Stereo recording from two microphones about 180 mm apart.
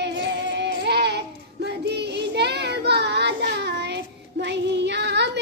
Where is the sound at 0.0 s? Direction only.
75° right (ahead or behind).